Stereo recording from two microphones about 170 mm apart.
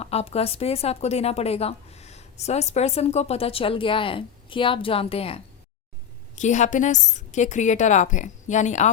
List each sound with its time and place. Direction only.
0.0 s a woman's voice: 35° left (ahead or behind)
6.3 s a woman's voice: 45° left (ahead or behind)